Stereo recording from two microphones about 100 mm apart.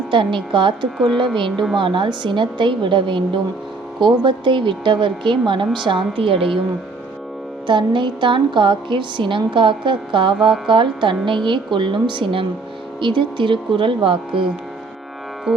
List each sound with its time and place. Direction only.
0.1 s a woman's voice: 55° right (ahead or behind)
0.9 s a woman's voice: centre (ahead or behind)
1.8 s a woman's voice: 55° right (ahead or behind)
7.7 s a woman's voice: 55° right (ahead or behind)
15.5 s music: 65° right (ahead or behind)